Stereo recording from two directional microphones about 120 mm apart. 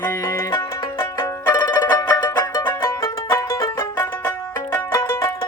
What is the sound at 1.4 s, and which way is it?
Music, 30° left (ahead or behind).